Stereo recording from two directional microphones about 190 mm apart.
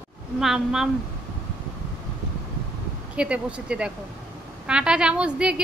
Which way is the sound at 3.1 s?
5° right (ahead or behind).